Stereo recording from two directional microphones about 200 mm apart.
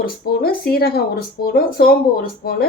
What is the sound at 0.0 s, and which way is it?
Speech, 50° left (ahead or behind).